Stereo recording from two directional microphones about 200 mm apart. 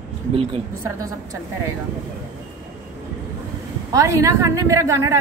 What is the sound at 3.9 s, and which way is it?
Speech, 15° right (ahead or behind).